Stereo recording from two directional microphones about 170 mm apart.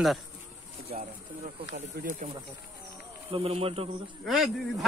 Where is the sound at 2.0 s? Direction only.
50° right (ahead or behind).